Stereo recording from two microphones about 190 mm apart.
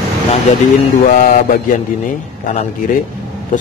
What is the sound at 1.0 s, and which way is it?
Mantra, 45° left (ahead or behind).